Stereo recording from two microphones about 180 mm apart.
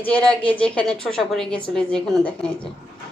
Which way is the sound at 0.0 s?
5° left (ahead or behind).